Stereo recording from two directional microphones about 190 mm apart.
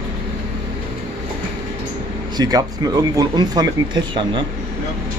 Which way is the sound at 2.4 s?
20° right (ahead or behind).